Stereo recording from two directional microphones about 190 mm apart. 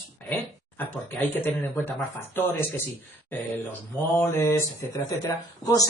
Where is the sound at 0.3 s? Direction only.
10° left (ahead or behind).